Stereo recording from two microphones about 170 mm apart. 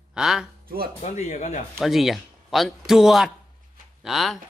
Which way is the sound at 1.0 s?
45° left (ahead or behind).